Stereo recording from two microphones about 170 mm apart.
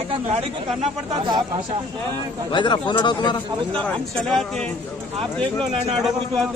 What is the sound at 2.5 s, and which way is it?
Speech, 25° left (ahead or behind).